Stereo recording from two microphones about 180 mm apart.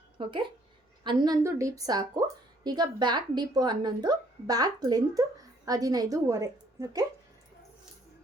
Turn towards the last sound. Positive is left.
turn(degrees=-20)  # may be behind; listen again after turning